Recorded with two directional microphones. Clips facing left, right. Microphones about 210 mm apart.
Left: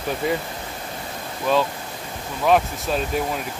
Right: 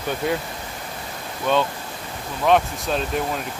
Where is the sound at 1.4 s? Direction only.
Centre (ahead or behind).